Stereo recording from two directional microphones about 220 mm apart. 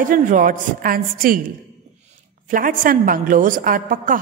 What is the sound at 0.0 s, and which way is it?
A man's voice, 35° right (ahead or behind).